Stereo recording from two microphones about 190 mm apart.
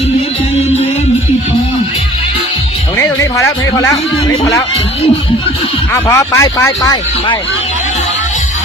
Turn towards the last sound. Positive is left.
turn(degrees=20)  # may be behind; listen again after turning